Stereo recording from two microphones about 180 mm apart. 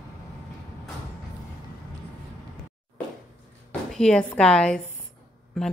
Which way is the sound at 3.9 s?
5° left (ahead or behind).